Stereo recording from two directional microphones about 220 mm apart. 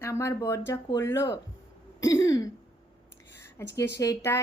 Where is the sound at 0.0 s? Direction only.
15° left (ahead or behind).